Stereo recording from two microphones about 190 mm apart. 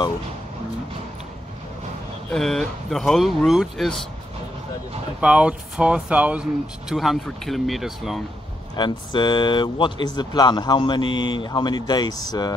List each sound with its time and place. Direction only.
2.3 s speech: centre (ahead or behind)
5.2 s speech: 5° right (ahead or behind)
8.7 s speech: 25° left (ahead or behind)